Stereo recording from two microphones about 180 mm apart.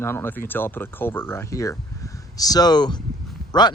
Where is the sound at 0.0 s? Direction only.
15° left (ahead or behind).